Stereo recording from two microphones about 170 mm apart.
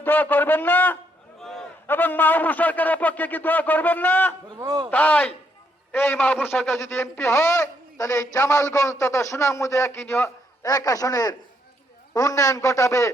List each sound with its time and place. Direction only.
0.0 s a man's voice: 10° left (ahead or behind)
4.4 s speech: 25° right (ahead or behind)
4.9 s a man's voice: 10° left (ahead or behind)